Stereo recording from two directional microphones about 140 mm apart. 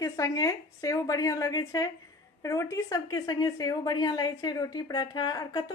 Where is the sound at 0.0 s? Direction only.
25° left (ahead or behind).